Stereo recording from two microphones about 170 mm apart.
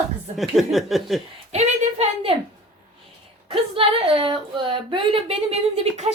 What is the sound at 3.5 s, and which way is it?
A woman's voice, 35° right (ahead or behind).